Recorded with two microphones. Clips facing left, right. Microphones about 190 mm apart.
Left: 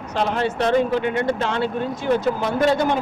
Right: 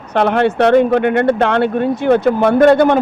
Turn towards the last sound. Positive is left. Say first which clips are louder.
# right 9 dB
turn(degrees=-60)  # may be behind; listen again after turning